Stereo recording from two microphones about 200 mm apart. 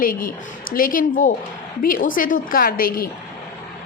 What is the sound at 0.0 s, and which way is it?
A woman's voice, 45° left (ahead or behind).